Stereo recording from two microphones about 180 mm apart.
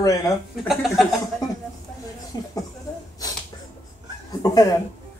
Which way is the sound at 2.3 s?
20° left (ahead or behind).